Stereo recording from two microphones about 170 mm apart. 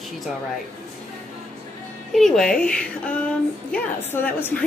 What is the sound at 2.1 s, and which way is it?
A woman's voice, centre (ahead or behind).